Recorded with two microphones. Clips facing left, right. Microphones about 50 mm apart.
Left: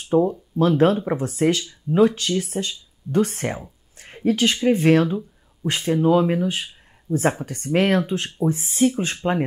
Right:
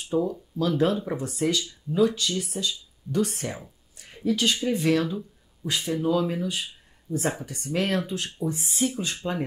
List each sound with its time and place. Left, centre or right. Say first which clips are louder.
0.0 s speech: left 7 dB; left